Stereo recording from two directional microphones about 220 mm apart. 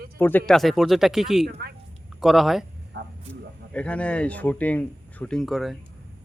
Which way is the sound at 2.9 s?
50° right (ahead or behind).